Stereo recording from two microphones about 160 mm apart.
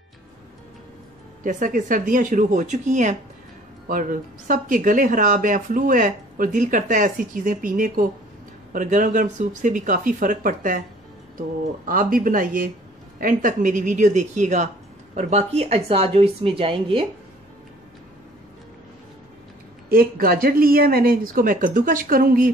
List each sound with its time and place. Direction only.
1.4 s a woman's voice: 55° right (ahead or behind); by 17.0 s 35° right (ahead or behind)
19.9 s speech: 65° right (ahead or behind)